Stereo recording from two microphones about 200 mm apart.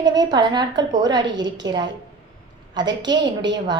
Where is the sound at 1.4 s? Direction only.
65° right (ahead or behind).